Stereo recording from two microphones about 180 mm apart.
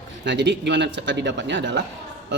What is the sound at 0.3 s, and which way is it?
A man's voice, 75° right (ahead or behind).